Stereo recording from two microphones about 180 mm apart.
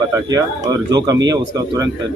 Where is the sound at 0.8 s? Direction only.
20° right (ahead or behind).